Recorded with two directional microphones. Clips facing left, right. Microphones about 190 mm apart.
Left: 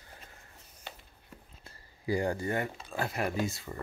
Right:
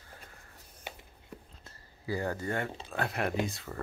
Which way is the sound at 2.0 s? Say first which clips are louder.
Left 3 dB; 15° left (ahead or behind).